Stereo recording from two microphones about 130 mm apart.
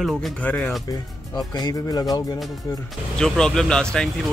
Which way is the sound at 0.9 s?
30° left (ahead or behind).